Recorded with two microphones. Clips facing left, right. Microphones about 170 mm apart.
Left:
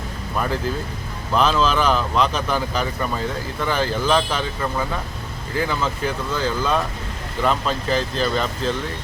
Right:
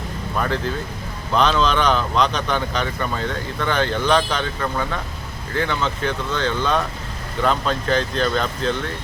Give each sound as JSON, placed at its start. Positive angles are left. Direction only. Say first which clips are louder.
{"t": 0.3, "sound": "speech", "louder": "even", "side_deg": 5}